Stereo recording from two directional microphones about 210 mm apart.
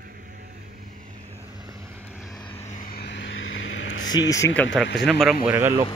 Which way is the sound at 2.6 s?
40° left (ahead or behind).